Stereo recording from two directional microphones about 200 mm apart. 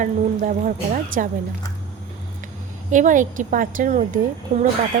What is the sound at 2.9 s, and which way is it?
Speech, 40° right (ahead or behind).